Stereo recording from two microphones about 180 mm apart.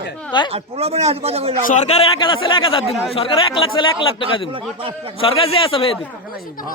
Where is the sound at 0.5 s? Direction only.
35° right (ahead or behind).